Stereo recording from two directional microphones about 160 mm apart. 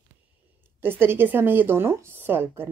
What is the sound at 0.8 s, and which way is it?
Speech, 15° right (ahead or behind).